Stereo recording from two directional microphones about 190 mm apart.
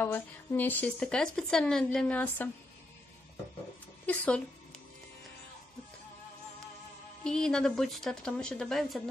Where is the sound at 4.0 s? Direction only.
5° left (ahead or behind).